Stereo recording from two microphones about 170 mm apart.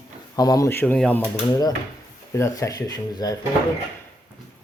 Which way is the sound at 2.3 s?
20° left (ahead or behind).